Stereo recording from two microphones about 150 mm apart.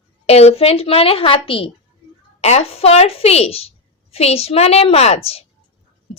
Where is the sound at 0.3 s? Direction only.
45° left (ahead or behind).